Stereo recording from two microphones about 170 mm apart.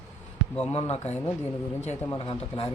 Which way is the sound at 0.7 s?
40° left (ahead or behind).